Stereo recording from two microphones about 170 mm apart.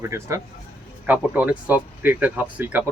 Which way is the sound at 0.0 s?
15° right (ahead or behind).